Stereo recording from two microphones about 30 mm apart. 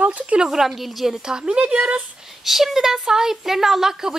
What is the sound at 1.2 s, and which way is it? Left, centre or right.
Speech, right.